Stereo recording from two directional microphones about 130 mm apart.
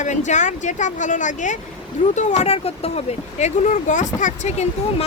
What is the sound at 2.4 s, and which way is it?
Speech, 50° left (ahead or behind).